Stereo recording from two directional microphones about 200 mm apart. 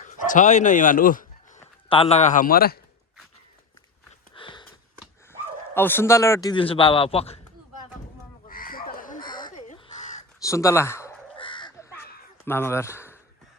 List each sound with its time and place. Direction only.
0.0 s dog: 40° left (ahead or behind)
1.9 s a man's voice: 30° left (ahead or behind); by 2.8 s 50° left (ahead or behind)
4.4 s a sound: 25° left (ahead or behind)
5.3 s speech: 10° left (ahead or behind); by 7.3 s 30° left (ahead or behind)
8.4 s crow: 45° left (ahead or behind)
10.4 s speech: 15° left (ahead or behind)
11.3 s crow: 25° left (ahead or behind)
12.5 s speech: 10° left (ahead or behind)